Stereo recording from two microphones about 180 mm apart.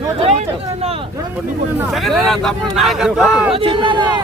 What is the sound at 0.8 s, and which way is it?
Vehicle, 35° right (ahead or behind).